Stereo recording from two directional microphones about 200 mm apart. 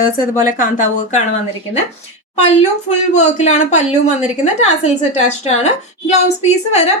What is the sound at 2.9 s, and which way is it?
A woman's voice, 35° left (ahead or behind).